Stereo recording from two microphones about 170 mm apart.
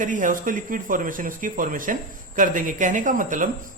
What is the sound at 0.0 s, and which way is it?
Speech, 50° right (ahead or behind).